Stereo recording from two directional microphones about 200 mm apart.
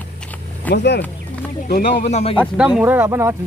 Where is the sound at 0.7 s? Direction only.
60° left (ahead or behind).